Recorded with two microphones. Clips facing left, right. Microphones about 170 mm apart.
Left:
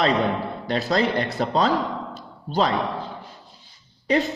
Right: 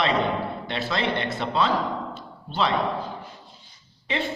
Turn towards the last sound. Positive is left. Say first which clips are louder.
# left 8 dB
turn(degrees=40)  # may be behind; listen again after turning